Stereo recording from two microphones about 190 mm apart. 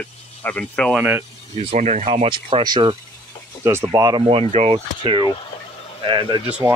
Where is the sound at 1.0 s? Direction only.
10° right (ahead or behind).